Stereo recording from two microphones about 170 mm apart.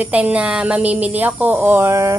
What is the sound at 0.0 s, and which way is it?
Speech, 10° right (ahead or behind).